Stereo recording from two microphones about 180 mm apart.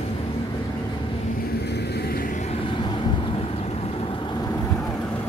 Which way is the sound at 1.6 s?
65° left (ahead or behind).